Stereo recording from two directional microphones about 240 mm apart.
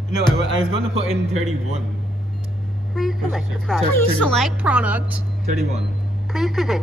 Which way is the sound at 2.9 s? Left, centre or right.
Centre.